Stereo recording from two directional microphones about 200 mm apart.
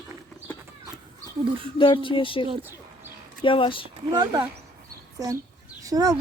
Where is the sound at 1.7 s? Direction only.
25° left (ahead or behind).